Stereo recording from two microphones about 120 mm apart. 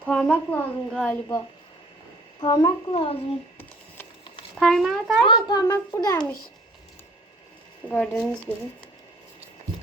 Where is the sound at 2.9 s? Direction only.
50° left (ahead or behind).